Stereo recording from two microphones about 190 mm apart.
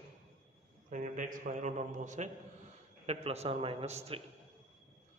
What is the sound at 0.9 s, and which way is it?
A man's voice, 45° right (ahead or behind).